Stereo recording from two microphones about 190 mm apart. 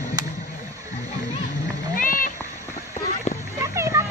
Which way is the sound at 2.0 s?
45° left (ahead or behind).